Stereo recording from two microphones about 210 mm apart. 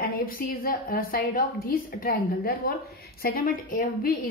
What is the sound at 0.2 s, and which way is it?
A woman's voice, 40° left (ahead or behind).